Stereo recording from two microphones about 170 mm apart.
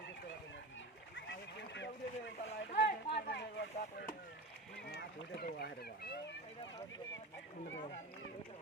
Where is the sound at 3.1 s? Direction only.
80° left.